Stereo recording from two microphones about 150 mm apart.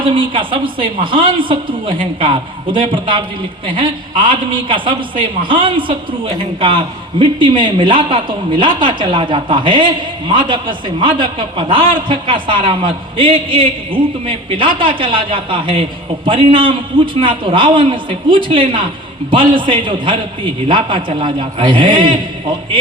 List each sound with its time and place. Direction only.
0.0 s a man's voice: 35° right (ahead or behind)